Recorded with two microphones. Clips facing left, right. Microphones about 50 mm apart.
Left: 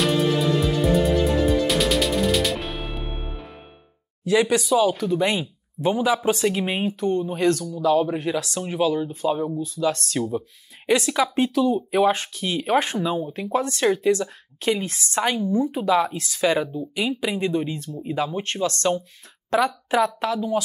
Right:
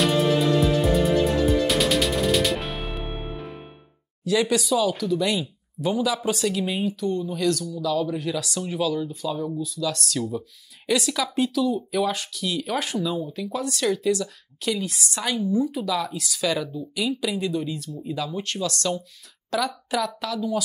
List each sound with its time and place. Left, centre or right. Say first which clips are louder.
0.0 s music: even; centre
4.2 s speech: left 2 dB; left